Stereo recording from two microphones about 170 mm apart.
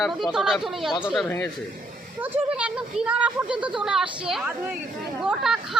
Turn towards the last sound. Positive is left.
turn(degrees=-5)  # may be behind; listen again after turning